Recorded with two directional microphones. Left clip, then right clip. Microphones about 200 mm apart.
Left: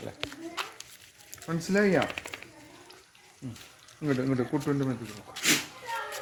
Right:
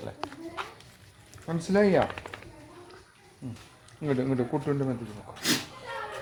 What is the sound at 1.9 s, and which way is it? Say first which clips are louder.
Speech: right 2 dB; 45° left (ahead or behind).